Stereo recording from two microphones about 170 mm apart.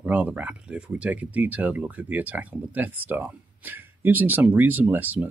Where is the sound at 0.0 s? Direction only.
10° right (ahead or behind).